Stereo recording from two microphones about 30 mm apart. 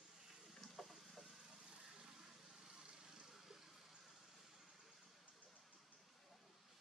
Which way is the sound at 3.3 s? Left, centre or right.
Centre.